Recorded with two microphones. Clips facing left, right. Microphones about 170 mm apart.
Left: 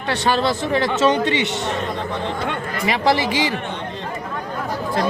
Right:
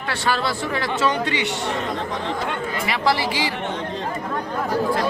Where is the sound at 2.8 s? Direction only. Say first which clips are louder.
Left 4 dB; 20° left (ahead or behind).